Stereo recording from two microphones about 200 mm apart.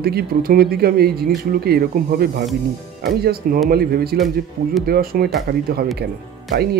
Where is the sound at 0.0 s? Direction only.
50° right (ahead or behind).